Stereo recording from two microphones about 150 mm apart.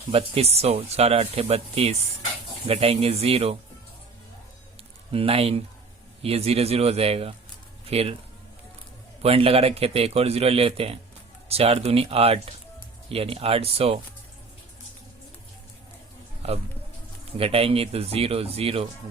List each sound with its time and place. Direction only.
0.1 s a man's voice: 40° right (ahead or behind)
5.1 s a man's voice: 40° right (ahead or behind)
9.2 s a man's voice: 40° right (ahead or behind)
17.3 s a man's voice: 40° right (ahead or behind)